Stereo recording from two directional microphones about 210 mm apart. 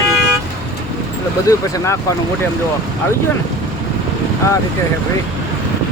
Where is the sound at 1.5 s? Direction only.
15° left (ahead or behind).